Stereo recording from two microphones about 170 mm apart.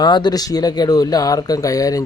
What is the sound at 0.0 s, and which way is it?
A man's voice, 25° left (ahead or behind).